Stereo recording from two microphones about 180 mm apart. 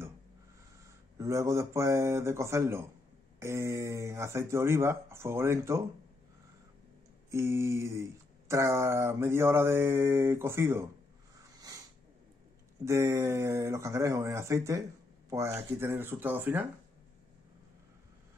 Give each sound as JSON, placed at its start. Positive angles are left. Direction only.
{"t": 1.1, "sound": "speech", "side_deg": -15}
{"t": 7.2, "sound": "speech", "side_deg": -15}
{"t": 12.8, "sound": "speech", "side_deg": -15}